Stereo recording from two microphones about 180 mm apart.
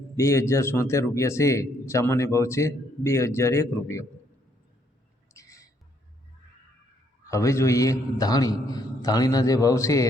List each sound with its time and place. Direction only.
0.2 s speech: 15° left (ahead or behind)
5.3 s a sound: 15° left (ahead or behind)
7.3 s a man's voice: 15° left (ahead or behind)